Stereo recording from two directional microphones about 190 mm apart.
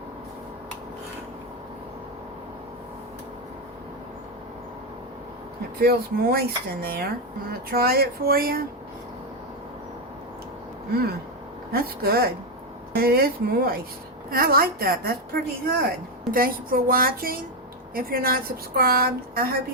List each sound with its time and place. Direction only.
5.8 s a woman's voice: 55° right (ahead or behind)
11.7 s a woman's voice: 55° right (ahead or behind)